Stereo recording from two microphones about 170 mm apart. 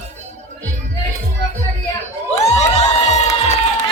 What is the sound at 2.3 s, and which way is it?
Cheering, 40° left (ahead or behind).